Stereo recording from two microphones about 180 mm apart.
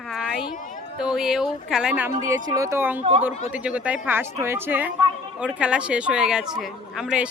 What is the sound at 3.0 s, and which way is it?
Speech, 35° right (ahead or behind).